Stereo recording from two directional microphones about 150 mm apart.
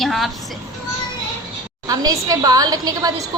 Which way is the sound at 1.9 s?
25° right (ahead or behind).